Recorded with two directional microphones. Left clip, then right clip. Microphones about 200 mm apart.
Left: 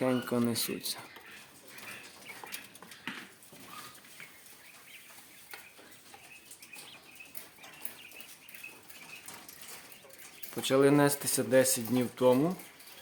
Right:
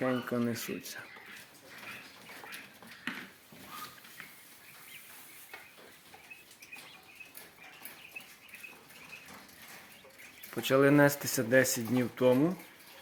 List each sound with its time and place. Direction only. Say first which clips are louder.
0.0 s speech: left 2 dB; 20° left (ahead or behind)
10.5 s speech: even; 5° left (ahead or behind)